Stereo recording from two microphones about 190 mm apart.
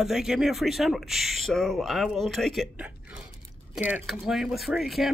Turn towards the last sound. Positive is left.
turn(degrees=0)  # may be behind; listen again after turning